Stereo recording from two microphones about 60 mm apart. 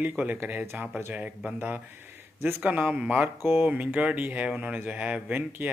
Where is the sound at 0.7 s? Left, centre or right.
Right.